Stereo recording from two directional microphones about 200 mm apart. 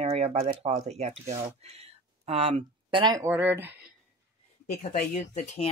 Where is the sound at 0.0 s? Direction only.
30° right (ahead or behind); by 3.9 s 10° right (ahead or behind).